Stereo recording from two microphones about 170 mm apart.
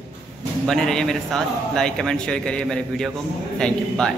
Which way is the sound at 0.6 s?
5° left (ahead or behind).